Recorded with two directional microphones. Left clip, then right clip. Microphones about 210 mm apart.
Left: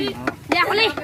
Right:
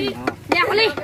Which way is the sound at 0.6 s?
40° left (ahead or behind).